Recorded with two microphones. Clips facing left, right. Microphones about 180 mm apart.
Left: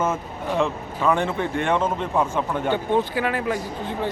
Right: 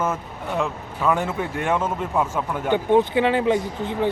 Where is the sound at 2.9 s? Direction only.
25° right (ahead or behind).